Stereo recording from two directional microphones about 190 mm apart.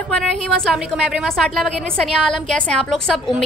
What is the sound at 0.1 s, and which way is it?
A woman's voice, centre (ahead or behind).